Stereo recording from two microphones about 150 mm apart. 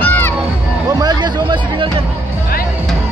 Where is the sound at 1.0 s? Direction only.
30° right (ahead or behind).